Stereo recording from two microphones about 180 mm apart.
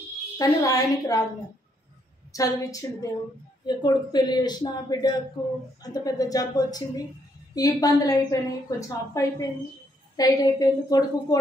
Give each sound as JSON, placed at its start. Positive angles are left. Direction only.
{"t": 0.4, "sound": "a woman's voice", "side_deg": 20}
{"t": 2.3, "sound": "a woman's voice", "side_deg": 20}